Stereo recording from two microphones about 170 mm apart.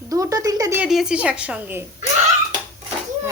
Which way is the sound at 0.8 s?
5° right (ahead or behind).